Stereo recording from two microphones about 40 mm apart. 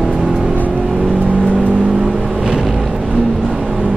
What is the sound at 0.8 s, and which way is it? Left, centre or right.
Vehicle, centre.